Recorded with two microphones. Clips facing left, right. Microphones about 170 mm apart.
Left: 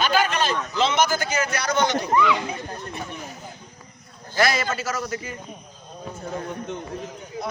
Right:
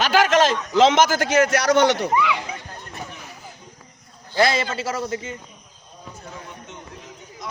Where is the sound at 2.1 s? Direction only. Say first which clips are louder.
Left 1 dB; 10° right (ahead or behind).